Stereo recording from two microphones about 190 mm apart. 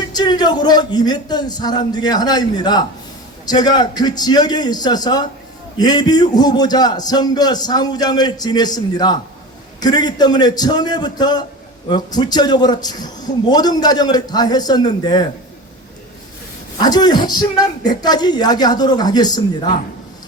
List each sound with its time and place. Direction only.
0.1 s a man's voice: 20° left (ahead or behind)
16.8 s a man's voice: 20° left (ahead or behind)